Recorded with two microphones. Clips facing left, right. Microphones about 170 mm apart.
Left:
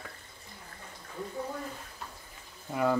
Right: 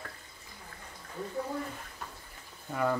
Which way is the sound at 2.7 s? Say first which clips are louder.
Left 2 dB; 15° left (ahead or behind).